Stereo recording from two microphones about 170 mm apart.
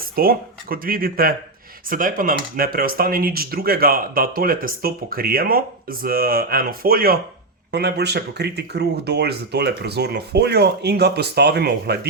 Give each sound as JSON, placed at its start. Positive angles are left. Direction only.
{"t": 0.0, "sound": "speech", "side_deg": -60}
{"t": 7.7, "sound": "speech", "side_deg": -75}